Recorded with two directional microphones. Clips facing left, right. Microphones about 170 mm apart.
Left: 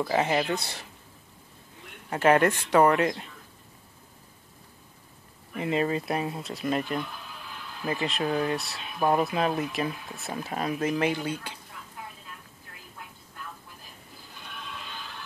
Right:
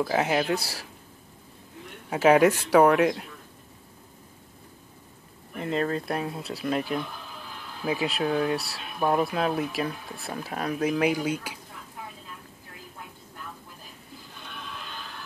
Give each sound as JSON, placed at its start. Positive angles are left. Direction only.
{"t": 0.0, "sound": "speech", "side_deg": 0}
{"t": 2.0, "sound": "speech", "side_deg": -5}
{"t": 5.6, "sound": "speech", "side_deg": 5}